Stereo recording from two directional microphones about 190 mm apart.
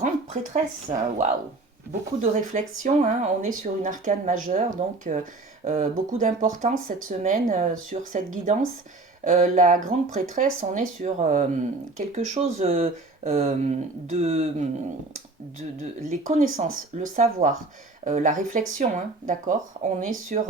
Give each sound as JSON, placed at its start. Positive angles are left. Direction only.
{"t": 0.5, "sound": "speech", "side_deg": -35}